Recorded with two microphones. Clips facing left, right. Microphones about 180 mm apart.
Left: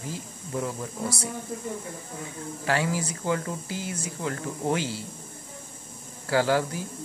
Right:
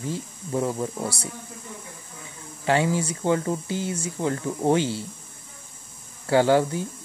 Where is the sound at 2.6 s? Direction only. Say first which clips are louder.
Right 5 dB; 25° right (ahead or behind).